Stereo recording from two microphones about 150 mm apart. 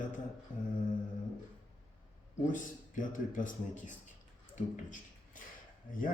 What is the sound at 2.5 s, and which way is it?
Speech, 60° left (ahead or behind).